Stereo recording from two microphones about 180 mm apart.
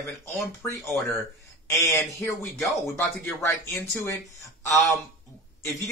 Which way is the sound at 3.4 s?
15° left (ahead or behind).